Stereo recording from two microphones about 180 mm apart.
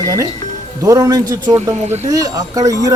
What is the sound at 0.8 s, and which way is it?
Speech, 20° right (ahead or behind).